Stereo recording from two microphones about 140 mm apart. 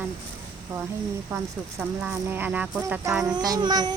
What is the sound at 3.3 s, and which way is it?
Child singing, 30° right (ahead or behind).